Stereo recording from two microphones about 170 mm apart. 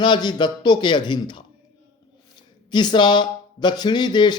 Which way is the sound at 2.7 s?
25° left (ahead or behind).